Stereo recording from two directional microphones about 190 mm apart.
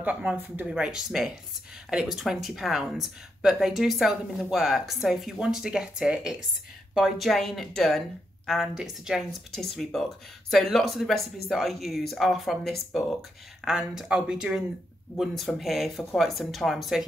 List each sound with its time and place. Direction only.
0.0 s speech: 5° right (ahead or behind)